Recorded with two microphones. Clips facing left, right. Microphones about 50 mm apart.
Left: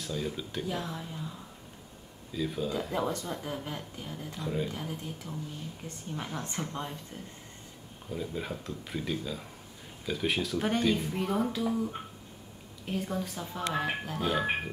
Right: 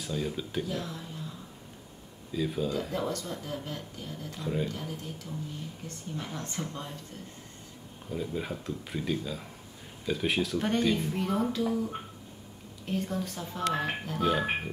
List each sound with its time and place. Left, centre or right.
0.0 s speech: centre
0.7 s speech: centre
2.3 s speech: centre
2.9 s speech: centre
4.3 s speech: centre
4.6 s speech: centre
8.1 s speech: centre